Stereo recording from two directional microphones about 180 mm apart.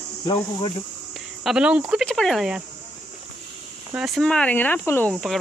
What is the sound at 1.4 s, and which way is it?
Speech, 5° right (ahead or behind).